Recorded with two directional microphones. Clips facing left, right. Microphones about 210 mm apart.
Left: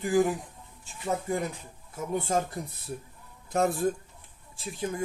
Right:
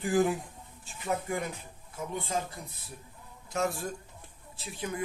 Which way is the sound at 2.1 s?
45° left (ahead or behind).